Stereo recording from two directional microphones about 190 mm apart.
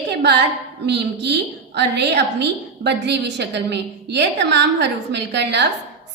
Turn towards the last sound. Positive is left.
turn(degrees=-65)  # may be behind; listen again after turning